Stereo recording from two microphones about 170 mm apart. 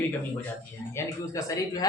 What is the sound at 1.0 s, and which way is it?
Speech, 20° left (ahead or behind).